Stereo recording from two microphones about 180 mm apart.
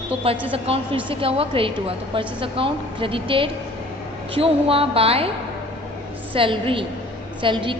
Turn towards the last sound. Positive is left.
turn(degrees=-30)  # may be behind; listen again after turning